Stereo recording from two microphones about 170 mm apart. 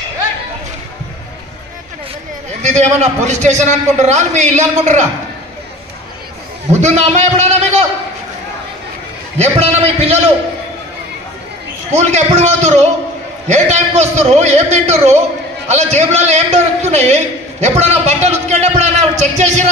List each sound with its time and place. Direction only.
2.6 s a man's voice: 40° right (ahead or behind)
6.7 s a man's voice: 40° right (ahead or behind)
9.4 s a man's voice: 40° right (ahead or behind)
11.9 s a man's voice: 40° right (ahead or behind)